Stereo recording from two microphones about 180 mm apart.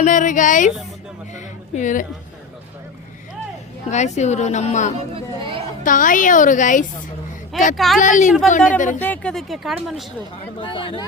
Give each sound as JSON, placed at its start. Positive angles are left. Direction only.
{"t": 0.0, "sound": "a woman's voice", "side_deg": 45}
{"t": 1.4, "sound": "music", "side_deg": 45}
{"t": 3.8, "sound": "a woman's voice", "side_deg": 40}
{"t": 7.5, "sound": "speech", "side_deg": 0}
{"t": 7.9, "sound": "a woman's voice", "side_deg": 45}
{"t": 8.3, "sound": "speech", "side_deg": 5}
{"t": 10.6, "sound": "speech", "side_deg": 25}